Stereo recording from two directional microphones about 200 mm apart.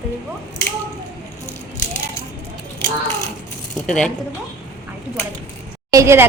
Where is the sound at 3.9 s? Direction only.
5° left (ahead or behind).